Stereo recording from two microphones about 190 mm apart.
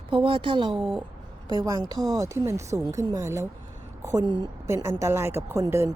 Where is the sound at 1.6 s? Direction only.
20° right (ahead or behind).